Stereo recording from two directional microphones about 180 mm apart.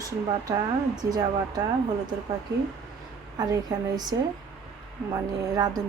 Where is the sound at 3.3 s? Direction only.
20° right (ahead or behind).